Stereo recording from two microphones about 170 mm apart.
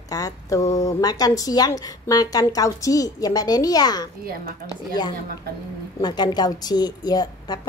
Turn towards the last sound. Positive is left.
turn(degrees=25)  # may be behind; listen again after turning